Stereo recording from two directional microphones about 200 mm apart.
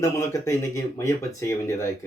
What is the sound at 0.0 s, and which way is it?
Speech, 15° left (ahead or behind).